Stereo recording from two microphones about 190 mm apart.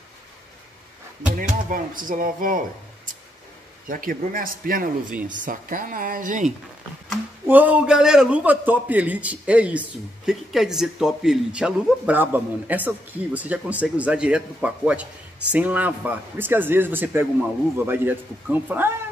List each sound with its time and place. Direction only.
1.3 s speech: 45° right (ahead or behind)
3.8 s speech: 45° right (ahead or behind)
7.4 s a man's voice: 10° right (ahead or behind)